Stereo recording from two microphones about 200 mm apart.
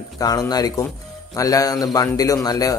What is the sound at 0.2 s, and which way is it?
A man's voice, 20° left (ahead or behind).